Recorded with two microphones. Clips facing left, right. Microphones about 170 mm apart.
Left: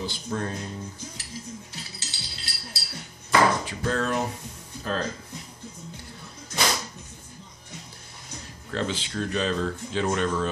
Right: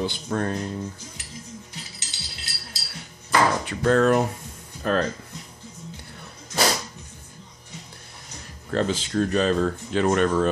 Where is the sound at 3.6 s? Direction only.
60° right (ahead or behind).